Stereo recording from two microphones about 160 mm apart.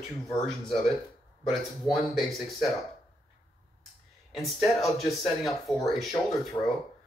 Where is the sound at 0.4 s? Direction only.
Centre (ahead or behind).